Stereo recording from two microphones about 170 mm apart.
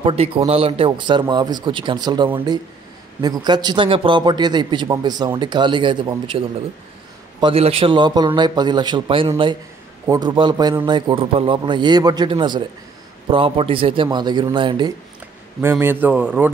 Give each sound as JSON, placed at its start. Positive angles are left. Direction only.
{"t": 0.0, "sound": "a man's voice", "side_deg": -35}
{"t": 15.8, "sound": "speech", "side_deg": -10}